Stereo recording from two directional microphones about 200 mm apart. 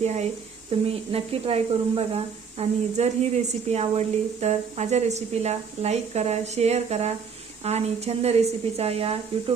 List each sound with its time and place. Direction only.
0.0 s speech: 35° right (ahead or behind)